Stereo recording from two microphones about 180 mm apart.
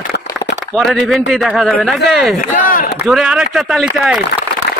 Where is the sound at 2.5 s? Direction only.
50° left (ahead or behind).